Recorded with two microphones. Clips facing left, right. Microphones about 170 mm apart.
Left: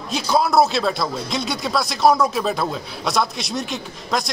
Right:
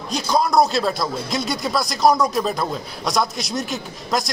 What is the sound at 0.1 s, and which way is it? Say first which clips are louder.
Speech: left 1 dB; 5° left (ahead or behind).